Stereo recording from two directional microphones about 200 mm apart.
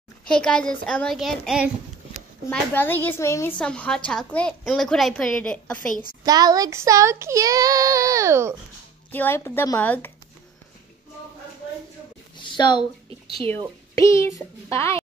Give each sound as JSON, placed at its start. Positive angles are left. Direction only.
{"t": 0.3, "sound": "a woman's voice", "side_deg": 5}
{"t": 2.5, "sound": "a woman's voice", "side_deg": 10}
{"t": 6.2, "sound": "speech", "side_deg": -20}
{"t": 9.1, "sound": "a child's voice", "side_deg": 10}
{"t": 12.4, "sound": "a sound", "side_deg": 20}
{"t": 13.9, "sound": "a child's voice", "side_deg": 15}